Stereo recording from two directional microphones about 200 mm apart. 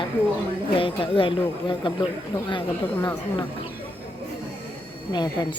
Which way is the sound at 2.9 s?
20° left (ahead or behind).